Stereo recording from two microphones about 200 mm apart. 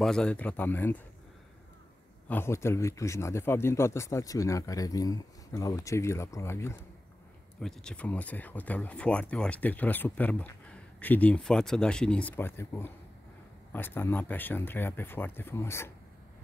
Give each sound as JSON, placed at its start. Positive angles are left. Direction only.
{"t": 0.0, "sound": "speech", "side_deg": 5}
{"t": 2.2, "sound": "speech", "side_deg": 10}